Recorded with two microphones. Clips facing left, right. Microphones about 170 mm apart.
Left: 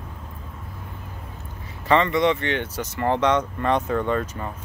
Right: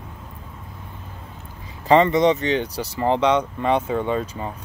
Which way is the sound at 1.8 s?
30° right (ahead or behind).